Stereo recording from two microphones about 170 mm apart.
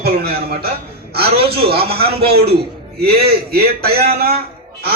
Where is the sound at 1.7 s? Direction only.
65° right (ahead or behind).